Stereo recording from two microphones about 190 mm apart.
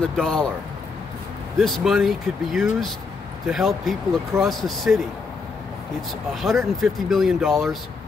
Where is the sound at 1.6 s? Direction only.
Centre (ahead or behind).